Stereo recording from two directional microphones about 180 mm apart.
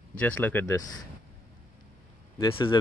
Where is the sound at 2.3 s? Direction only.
30° left (ahead or behind).